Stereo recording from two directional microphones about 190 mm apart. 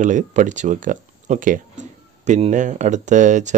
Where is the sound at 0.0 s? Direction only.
40° right (ahead or behind).